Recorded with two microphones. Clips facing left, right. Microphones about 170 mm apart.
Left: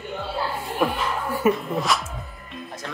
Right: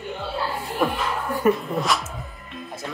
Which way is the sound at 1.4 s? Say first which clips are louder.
Right 1 dB; centre (ahead or behind).